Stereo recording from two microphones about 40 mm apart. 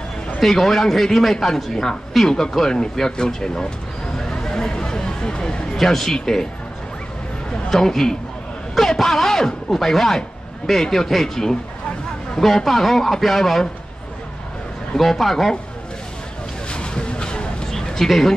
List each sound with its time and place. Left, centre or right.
0.4 s a man's voice: centre
4.2 s a sound: centre
5.8 s a man's voice: centre
7.7 s a man's voice: centre
15.0 s a man's voice: centre
16.7 s a sound: left